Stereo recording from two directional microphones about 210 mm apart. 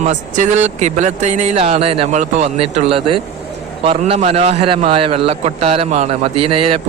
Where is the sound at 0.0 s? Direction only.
35° right (ahead or behind).